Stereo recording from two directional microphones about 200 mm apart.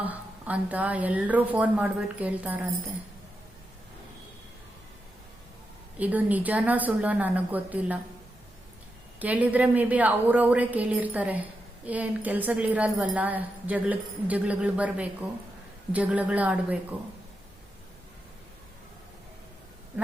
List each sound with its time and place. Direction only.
0.0 s speech: 5° right (ahead or behind)
6.0 s speech: 10° right (ahead or behind)
9.1 s speech: 10° right (ahead or behind)